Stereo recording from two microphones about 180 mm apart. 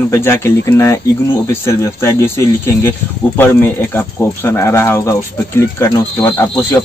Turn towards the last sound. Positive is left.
turn(degrees=10)  # may be behind; listen again after turning